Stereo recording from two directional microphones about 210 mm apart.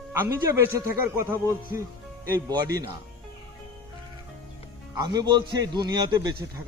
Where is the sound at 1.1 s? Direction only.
15° right (ahead or behind).